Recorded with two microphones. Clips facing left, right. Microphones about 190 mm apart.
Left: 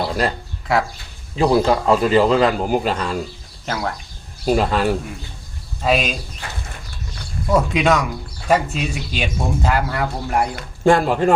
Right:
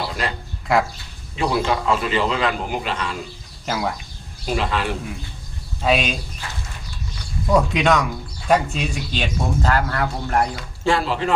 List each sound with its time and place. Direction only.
0.7 s speech: centre (ahead or behind)
1.4 s a man's voice: 35° left (ahead or behind)
3.7 s speech: 5° right (ahead or behind)
4.4 s a man's voice: 40° left (ahead or behind)
5.8 s speech: centre (ahead or behind)
7.5 s speech: centre (ahead or behind)
10.5 s speech: 50° left (ahead or behind)